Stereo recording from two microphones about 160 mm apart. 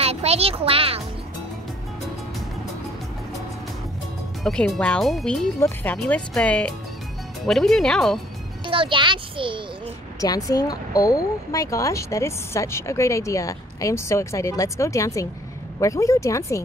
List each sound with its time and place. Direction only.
0.0 s speech: 40° right (ahead or behind)
4.4 s speech: centre (ahead or behind)
8.6 s a child's voice: 30° right (ahead or behind)
10.2 s speech: 20° left (ahead or behind)